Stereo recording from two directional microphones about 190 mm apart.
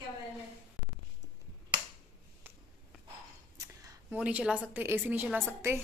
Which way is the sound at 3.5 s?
10° right (ahead or behind).